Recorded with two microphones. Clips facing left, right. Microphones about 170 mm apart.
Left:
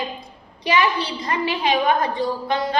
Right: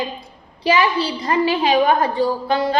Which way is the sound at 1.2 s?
30° right (ahead or behind).